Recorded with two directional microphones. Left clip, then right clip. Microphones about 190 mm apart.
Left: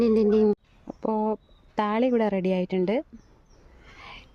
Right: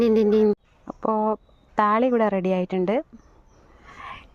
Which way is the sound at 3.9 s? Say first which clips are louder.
Right 6 dB; 10° left (ahead or behind).